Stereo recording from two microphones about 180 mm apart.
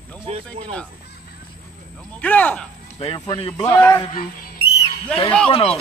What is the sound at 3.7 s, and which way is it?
Speech, 15° left (ahead or behind).